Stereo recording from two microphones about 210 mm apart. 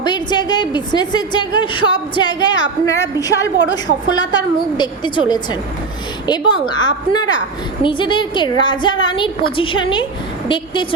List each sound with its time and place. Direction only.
0.0 s a woman's voice: 20° left (ahead or behind)